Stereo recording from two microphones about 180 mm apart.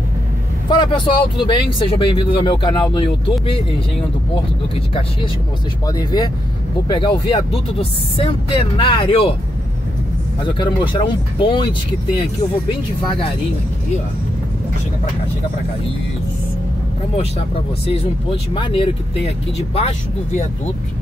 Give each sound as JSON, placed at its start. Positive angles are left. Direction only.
{"t": 0.7, "sound": "speech", "side_deg": 25}
{"t": 4.7, "sound": "speech", "side_deg": 30}
{"t": 10.4, "sound": "speech", "side_deg": 25}
{"t": 18.5, "sound": "speech", "side_deg": 30}